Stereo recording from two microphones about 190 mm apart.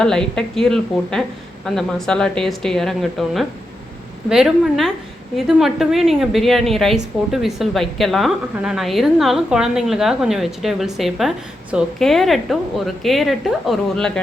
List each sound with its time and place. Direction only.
0.0 s a woman's voice: 5° left (ahead or behind)